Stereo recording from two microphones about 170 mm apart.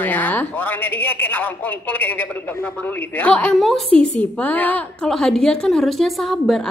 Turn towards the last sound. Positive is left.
turn(degrees=0)  # may be behind; listen again after turning